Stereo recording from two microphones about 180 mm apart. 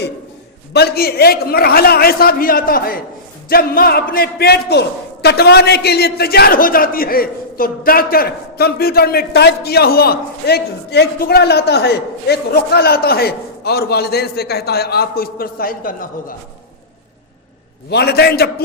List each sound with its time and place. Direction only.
0.7 s a man's voice: 60° left (ahead or behind)
17.9 s a man's voice: 65° left (ahead or behind)